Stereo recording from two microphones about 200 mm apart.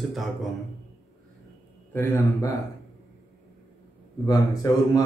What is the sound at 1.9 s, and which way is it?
Speech, 15° left (ahead or behind).